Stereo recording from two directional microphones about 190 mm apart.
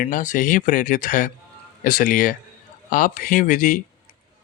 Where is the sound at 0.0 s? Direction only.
45° left (ahead or behind).